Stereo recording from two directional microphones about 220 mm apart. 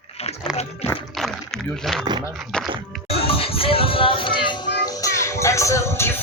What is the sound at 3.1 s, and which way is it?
Music, 25° left (ahead or behind).